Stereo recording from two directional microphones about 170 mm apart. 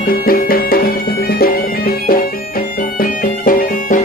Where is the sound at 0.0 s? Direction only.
60° left (ahead or behind).